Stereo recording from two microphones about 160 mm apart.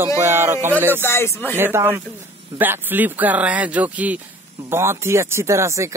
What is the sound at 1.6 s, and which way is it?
Speech, 15° right (ahead or behind).